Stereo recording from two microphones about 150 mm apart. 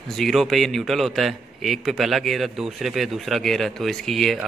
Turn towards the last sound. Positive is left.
turn(degrees=0)  # may be behind; listen again after turning